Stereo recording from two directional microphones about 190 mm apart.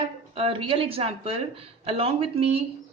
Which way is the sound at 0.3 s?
30° right (ahead or behind).